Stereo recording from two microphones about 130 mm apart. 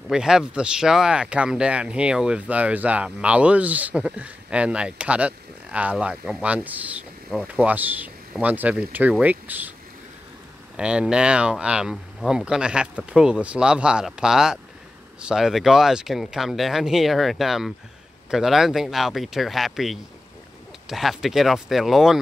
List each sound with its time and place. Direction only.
0.1 s speech: 5° right (ahead or behind)
10.8 s speech: 5° right (ahead or behind)